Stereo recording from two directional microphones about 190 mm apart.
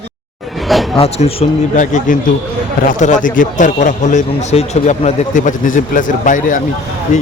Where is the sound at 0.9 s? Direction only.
30° left (ahead or behind).